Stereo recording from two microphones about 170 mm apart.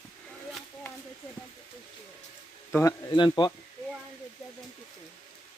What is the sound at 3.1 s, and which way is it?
Speech, 25° left (ahead or behind).